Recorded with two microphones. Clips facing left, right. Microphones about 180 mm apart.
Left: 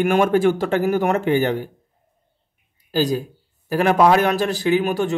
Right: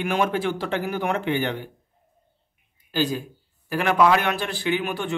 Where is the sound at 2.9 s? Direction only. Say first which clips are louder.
Left 5 dB; 40° left (ahead or behind).